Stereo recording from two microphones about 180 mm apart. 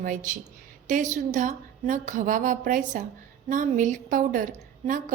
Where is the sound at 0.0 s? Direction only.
45° right (ahead or behind).